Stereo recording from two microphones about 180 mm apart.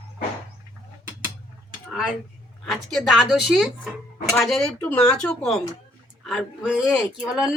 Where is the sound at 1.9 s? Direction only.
Centre (ahead or behind).